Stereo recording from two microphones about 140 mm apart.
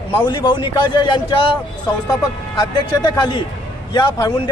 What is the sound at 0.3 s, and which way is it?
Speech, 35° left (ahead or behind).